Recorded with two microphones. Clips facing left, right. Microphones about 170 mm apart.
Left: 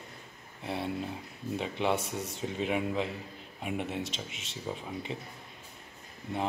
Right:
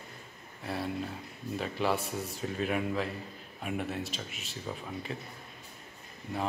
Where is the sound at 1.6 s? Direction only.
20° left (ahead or behind).